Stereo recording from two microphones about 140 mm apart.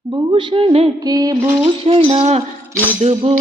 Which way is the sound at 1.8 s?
45° right (ahead or behind).